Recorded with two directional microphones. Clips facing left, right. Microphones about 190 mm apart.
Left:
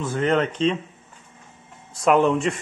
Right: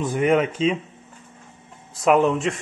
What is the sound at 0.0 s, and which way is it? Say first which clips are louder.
Speech: right 2 dB; 15° right (ahead or behind).